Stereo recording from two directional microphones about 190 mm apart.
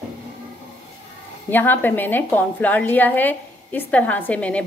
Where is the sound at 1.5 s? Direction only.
10° left (ahead or behind).